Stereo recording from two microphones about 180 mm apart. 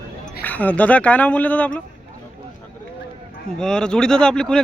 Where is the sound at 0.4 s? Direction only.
10° left (ahead or behind).